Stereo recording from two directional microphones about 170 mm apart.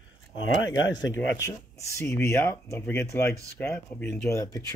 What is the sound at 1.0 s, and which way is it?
Speech, 90° left.